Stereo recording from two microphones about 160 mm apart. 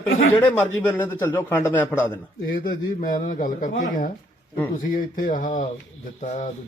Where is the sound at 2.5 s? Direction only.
60° left (ahead or behind).